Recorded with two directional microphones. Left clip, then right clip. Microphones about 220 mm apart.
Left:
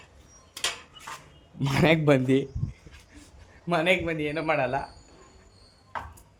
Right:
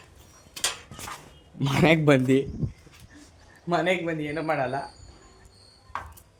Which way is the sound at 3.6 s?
5° right (ahead or behind).